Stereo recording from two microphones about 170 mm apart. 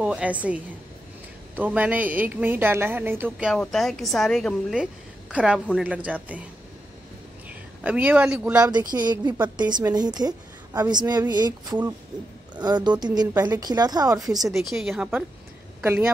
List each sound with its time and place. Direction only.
0.0 s a woman's voice: 5° right (ahead or behind)
7.4 s speech: 10° right (ahead or behind)
8.9 s a woman's voice: 25° right (ahead or behind)
14.5 s a woman's voice: centre (ahead or behind)